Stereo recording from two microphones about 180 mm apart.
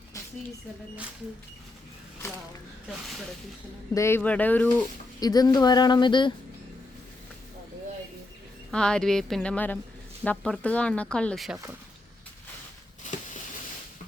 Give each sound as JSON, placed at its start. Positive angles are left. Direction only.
{"t": 2.2, "sound": "speech", "side_deg": 15}
{"t": 3.9, "sound": "speech", "side_deg": 15}
{"t": 5.2, "sound": "speech", "side_deg": 20}
{"t": 8.7, "sound": "speech", "side_deg": 5}
{"t": 11.5, "sound": "speech", "side_deg": -15}